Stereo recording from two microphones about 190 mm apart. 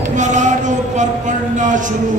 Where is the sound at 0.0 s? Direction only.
40° right (ahead or behind).